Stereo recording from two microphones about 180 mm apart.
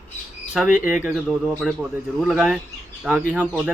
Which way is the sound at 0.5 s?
5° right (ahead or behind).